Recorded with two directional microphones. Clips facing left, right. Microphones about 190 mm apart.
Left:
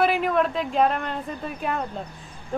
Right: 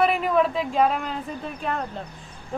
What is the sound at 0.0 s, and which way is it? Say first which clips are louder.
Speech: right 1 dB; centre (ahead or behind).